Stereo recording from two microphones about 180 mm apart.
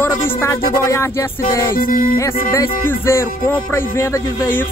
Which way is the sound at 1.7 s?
50° left (ahead or behind).